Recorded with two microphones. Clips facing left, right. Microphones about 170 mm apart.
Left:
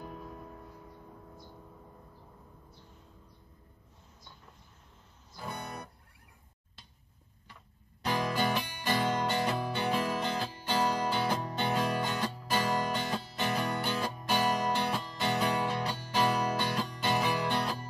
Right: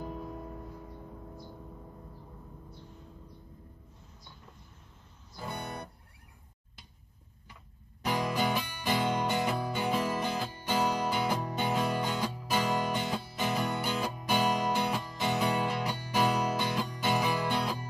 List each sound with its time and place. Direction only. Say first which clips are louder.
5.5 s music: right 2 dB; 10° right (ahead or behind)
8.0 s music: even; 10° right (ahead or behind)